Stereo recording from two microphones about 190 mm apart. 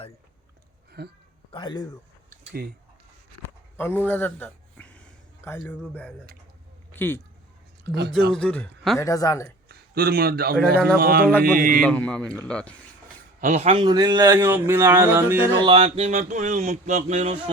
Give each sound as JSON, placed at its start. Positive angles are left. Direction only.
{"t": 1.0, "sound": "speech", "side_deg": -60}
{"t": 1.5, "sound": "speech", "side_deg": 25}
{"t": 3.4, "sound": "a sound", "side_deg": 10}
{"t": 6.9, "sound": "speech", "side_deg": 10}
{"t": 7.9, "sound": "speech", "side_deg": -60}
{"t": 8.3, "sound": "speech", "side_deg": 5}
{"t": 9.0, "sound": "a woman's voice", "side_deg": 15}
{"t": 9.6, "sound": "a man's voice", "side_deg": -55}
{"t": 11.8, "sound": "speech", "side_deg": 5}
{"t": 13.4, "sound": "a man's voice", "side_deg": -35}
{"t": 14.7, "sound": "music", "side_deg": -10}
{"t": 15.5, "sound": "speech", "side_deg": -25}